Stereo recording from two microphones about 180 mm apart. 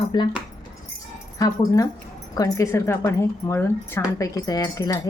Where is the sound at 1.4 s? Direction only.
20° left (ahead or behind).